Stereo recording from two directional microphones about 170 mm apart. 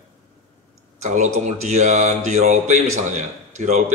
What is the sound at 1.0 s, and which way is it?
Speech, 40° right (ahead or behind).